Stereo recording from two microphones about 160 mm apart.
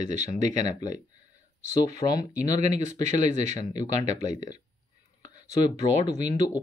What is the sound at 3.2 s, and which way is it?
Speech, 45° right (ahead or behind).